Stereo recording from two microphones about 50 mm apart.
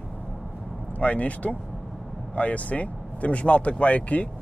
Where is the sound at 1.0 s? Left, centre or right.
Left.